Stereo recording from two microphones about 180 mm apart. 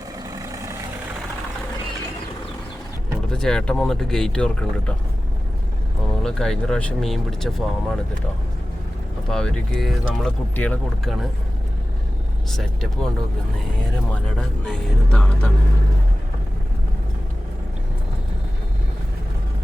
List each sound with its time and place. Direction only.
0.2 s vehicle: 20° right (ahead or behind)
3.3 s speech: 5° left (ahead or behind)
6.2 s speech: 5° left (ahead or behind)
9.3 s speech: 5° left (ahead or behind)
12.5 s speech: centre (ahead or behind)
14.1 s speech: 5° left (ahead or behind)